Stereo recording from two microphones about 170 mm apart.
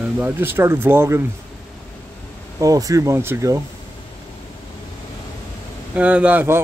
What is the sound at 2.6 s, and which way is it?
Speech, 20° right (ahead or behind).